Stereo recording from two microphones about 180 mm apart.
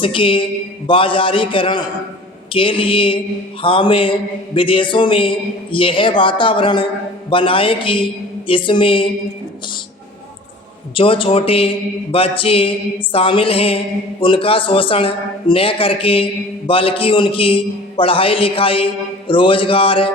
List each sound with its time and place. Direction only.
0.0 s a man's voice: 30° left (ahead or behind)
10.9 s a sound: 30° left (ahead or behind)
14.2 s a man's voice: 30° left (ahead or behind)